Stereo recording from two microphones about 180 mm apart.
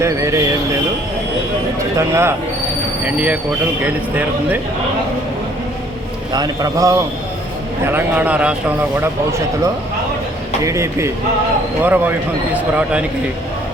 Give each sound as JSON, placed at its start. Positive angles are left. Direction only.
{"t": 0.0, "sound": "a man's voice", "side_deg": -15}
{"t": 2.0, "sound": "a man's voice", "side_deg": -15}
{"t": 4.2, "sound": "a man's voice", "side_deg": -10}
{"t": 6.3, "sound": "a man's voice", "side_deg": -20}
{"t": 10.7, "sound": "a man's voice", "side_deg": -15}